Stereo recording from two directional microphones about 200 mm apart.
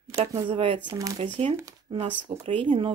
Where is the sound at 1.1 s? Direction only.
25° right (ahead or behind).